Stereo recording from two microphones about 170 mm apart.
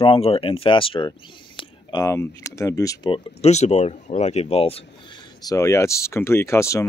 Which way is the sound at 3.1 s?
40° left (ahead or behind).